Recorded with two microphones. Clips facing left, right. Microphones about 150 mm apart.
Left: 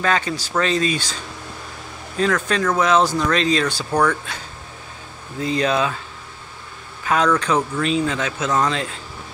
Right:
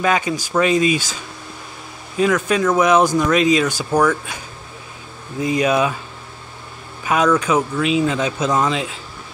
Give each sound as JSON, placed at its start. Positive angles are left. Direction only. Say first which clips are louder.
{"t": 0.0, "sound": "speech", "louder": "right 2 dB", "side_deg": -10}
{"t": 5.4, "sound": "speech", "louder": "right 3 dB", "side_deg": -15}
{"t": 7.1, "sound": "speech", "louder": "right 2 dB", "side_deg": -10}